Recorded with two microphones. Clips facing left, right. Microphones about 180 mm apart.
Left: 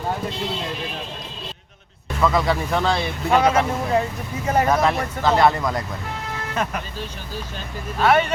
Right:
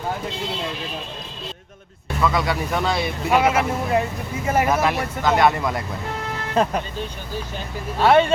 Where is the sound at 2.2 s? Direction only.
Centre (ahead or behind).